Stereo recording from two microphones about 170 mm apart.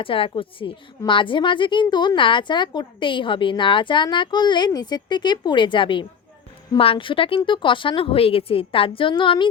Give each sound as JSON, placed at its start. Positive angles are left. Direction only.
{"t": 0.0, "sound": "a woman's voice", "side_deg": 30}